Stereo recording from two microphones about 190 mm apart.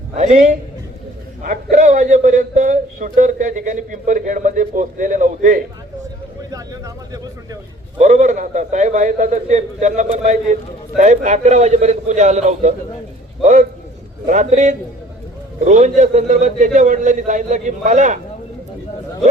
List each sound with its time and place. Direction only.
0.2 s a man's voice: 35° right (ahead or behind)
6.5 s a sound: 20° right (ahead or behind)
7.9 s a man's voice: 40° right (ahead or behind)